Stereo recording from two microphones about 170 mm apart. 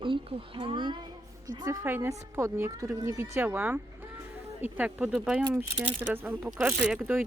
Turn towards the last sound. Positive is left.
turn(degrees=-10)  # may be behind; listen again after turning